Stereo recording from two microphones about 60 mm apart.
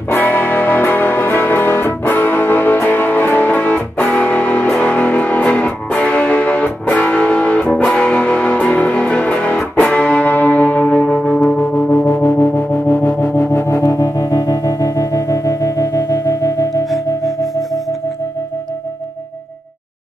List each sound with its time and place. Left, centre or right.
0.1 s music: left
9.9 s church bell: left
11.5 s music: left